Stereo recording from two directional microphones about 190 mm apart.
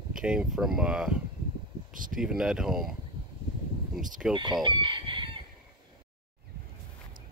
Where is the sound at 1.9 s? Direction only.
45° right (ahead or behind).